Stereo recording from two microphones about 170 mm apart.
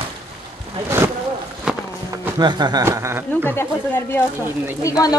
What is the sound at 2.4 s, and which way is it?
Speech, 25° right (ahead or behind).